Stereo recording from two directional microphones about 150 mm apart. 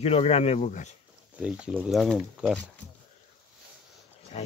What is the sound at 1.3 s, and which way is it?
Speech, 10° right (ahead or behind).